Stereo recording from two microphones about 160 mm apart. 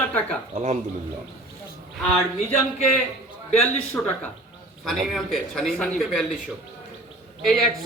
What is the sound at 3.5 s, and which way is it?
A woman's voice, 10° left (ahead or behind).